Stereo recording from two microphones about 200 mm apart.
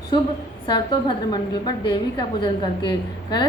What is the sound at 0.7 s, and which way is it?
A woman's voice, 20° left (ahead or behind).